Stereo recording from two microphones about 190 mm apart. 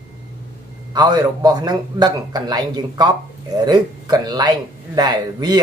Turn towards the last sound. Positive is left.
turn(degrees=-20)  # may be behind; listen again after turning